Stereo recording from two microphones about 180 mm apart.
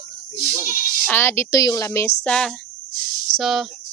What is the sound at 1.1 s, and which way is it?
Speech, 10° left (ahead or behind).